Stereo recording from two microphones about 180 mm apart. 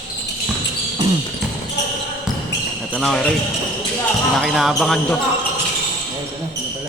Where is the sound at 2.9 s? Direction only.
5° left (ahead or behind).